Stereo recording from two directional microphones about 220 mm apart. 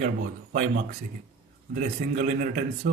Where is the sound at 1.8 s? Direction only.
35° right (ahead or behind).